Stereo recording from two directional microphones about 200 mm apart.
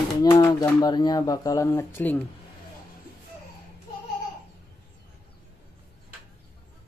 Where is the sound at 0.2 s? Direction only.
15° left (ahead or behind).